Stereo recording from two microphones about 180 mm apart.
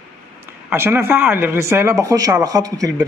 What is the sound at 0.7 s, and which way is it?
Speech, 10° right (ahead or behind).